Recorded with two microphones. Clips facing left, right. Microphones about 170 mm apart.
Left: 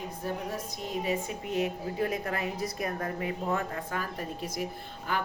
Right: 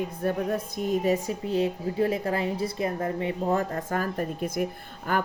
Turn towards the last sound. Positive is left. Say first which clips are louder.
# right 5 dB
turn(degrees=-50)  # may be behind; listen again after turning